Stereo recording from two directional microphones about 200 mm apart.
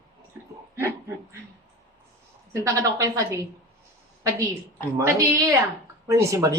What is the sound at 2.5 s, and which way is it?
Speech, 15° right (ahead or behind).